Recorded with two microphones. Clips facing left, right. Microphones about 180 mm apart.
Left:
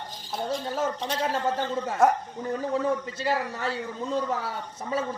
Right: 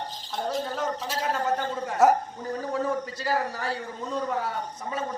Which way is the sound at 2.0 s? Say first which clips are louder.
Right 2 dB; 5° right (ahead or behind).